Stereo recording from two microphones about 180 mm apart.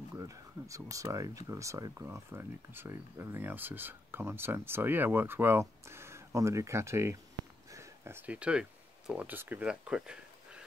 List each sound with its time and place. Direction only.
0.1 s speech: 20° right (ahead or behind)